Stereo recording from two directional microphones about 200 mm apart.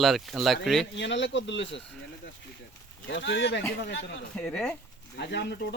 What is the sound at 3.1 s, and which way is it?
Speech, 65° left (ahead or behind).